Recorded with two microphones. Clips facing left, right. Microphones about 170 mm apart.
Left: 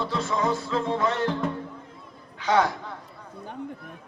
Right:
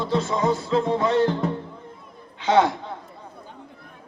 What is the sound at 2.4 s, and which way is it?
Speech, 25° right (ahead or behind).